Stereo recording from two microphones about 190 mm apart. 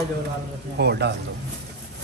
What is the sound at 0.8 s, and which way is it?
Speech, 60° right (ahead or behind).